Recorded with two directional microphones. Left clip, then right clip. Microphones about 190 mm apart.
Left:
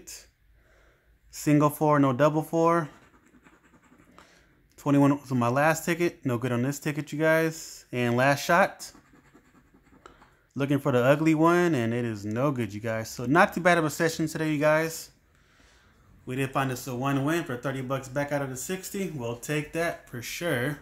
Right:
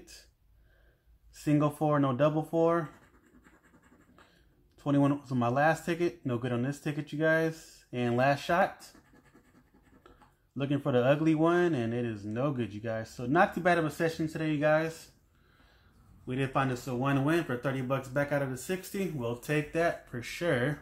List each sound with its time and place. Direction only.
1.4 s speech: 25° left (ahead or behind)
4.7 s speech: 25° left (ahead or behind)
10.5 s speech: 25° left (ahead or behind)
16.3 s speech: 15° left (ahead or behind)